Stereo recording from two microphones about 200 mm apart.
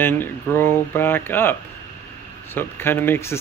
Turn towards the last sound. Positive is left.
turn(degrees=10)  # may be behind; listen again after turning